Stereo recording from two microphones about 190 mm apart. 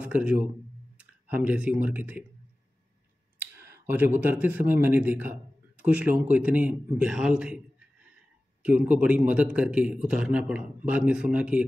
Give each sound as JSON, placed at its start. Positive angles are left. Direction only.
{"t": 0.0, "sound": "speech", "side_deg": -5}
{"t": 3.7, "sound": "speech", "side_deg": -10}
{"t": 8.6, "sound": "speech", "side_deg": -10}